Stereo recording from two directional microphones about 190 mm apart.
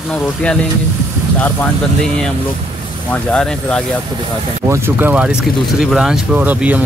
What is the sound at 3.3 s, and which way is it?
Speech, 5° left (ahead or behind).